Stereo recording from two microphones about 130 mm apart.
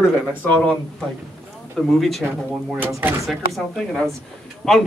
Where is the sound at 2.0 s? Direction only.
Centre (ahead or behind).